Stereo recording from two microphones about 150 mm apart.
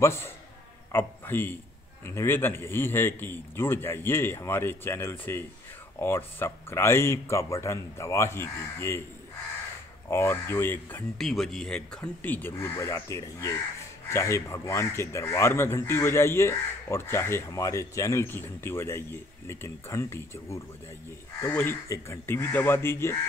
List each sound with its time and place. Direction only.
0.0 s speech: 15° left (ahead or behind)
10.0 s speech: 15° left (ahead or behind)
11.1 s speech: centre (ahead or behind)